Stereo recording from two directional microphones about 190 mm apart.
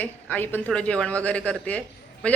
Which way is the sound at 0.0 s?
10° left (ahead or behind).